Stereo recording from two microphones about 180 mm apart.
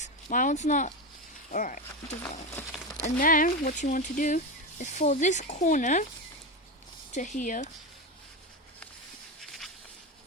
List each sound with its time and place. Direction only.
0.0 s speech: 45° left (ahead or behind)
7.1 s speech: 45° left (ahead or behind)
9.4 s a sound: centre (ahead or behind)